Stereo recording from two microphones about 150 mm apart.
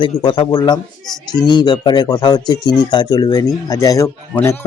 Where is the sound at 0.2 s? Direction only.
30° left (ahead or behind).